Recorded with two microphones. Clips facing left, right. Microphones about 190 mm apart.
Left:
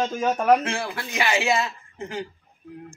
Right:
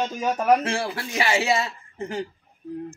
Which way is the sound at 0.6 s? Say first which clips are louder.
Right 2 dB; 35° right (ahead or behind).